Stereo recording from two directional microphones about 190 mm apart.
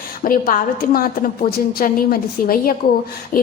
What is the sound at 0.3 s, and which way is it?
A woman's voice, 45° left (ahead or behind).